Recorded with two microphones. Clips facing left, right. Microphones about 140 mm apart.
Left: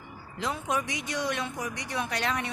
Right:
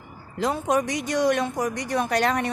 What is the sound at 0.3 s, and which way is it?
Speech, 45° right (ahead or behind).